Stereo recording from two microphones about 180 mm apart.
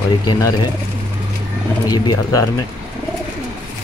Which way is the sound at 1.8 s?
20° left (ahead or behind).